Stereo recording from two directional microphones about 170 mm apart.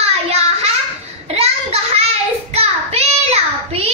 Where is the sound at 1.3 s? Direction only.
40° right (ahead or behind).